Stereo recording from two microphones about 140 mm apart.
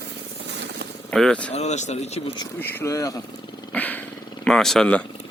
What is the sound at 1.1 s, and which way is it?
Speech, 5° left (ahead or behind).